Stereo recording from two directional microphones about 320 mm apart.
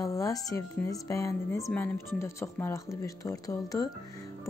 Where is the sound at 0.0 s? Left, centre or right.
Centre.